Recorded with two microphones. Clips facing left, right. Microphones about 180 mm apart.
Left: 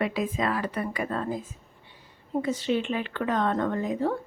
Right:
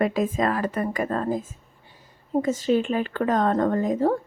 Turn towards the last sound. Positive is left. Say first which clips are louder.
# right 5 dB
turn(degrees=-45)  # may be behind; listen again after turning